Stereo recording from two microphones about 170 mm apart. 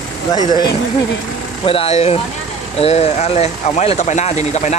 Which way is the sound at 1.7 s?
35° left (ahead or behind).